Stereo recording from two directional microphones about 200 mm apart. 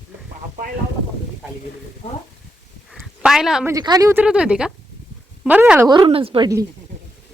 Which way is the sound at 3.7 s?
20° right (ahead or behind).